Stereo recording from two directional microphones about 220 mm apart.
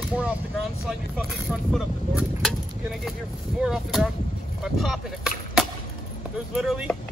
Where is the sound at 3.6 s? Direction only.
Centre (ahead or behind).